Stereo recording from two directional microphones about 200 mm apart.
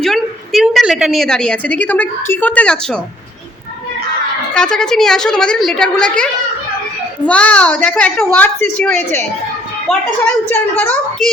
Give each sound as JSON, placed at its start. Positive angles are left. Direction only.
{"t": 0.0, "sound": "a woman's voice", "side_deg": 0}
{"t": 4.5, "sound": "a woman's voice", "side_deg": 5}
{"t": 7.3, "sound": "a child's voice", "side_deg": 5}